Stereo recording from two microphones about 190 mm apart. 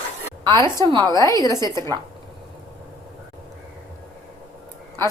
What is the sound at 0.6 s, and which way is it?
A woman's voice, 25° right (ahead or behind).